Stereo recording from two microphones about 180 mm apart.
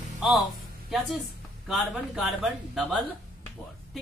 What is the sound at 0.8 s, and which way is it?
A woman's voice, centre (ahead or behind).